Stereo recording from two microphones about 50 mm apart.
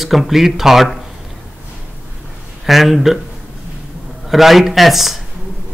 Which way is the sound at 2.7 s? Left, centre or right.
Centre.